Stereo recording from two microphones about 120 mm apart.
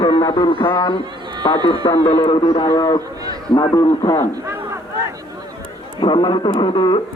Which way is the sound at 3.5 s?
30° left (ahead or behind).